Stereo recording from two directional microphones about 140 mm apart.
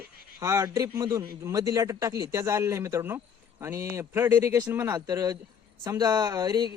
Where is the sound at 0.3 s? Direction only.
20° right (ahead or behind).